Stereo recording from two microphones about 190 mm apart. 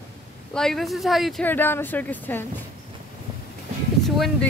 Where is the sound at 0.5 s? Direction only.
Centre (ahead or behind).